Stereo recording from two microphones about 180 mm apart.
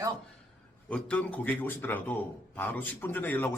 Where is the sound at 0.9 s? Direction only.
5° left (ahead or behind).